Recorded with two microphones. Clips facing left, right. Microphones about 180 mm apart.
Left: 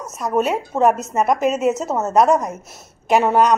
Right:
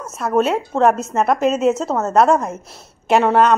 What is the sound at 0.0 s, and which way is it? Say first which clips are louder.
A woman's voice: right 2 dB; 15° left (ahead or behind).